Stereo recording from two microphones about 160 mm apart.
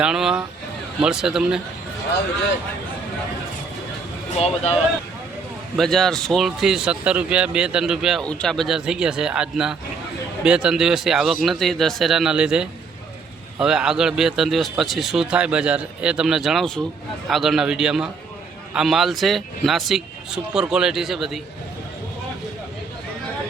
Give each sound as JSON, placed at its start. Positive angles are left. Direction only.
{"t": 0.0, "sound": "speech", "side_deg": -5}
{"t": 4.4, "sound": "speech", "side_deg": 40}
{"t": 5.7, "sound": "speech", "side_deg": 0}